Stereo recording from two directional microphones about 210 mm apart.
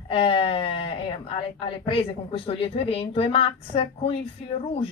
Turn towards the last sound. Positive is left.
turn(degrees=30)  # may be behind; listen again after turning